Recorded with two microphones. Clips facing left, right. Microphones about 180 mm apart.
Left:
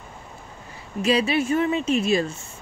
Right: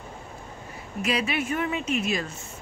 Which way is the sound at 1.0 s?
30° left (ahead or behind).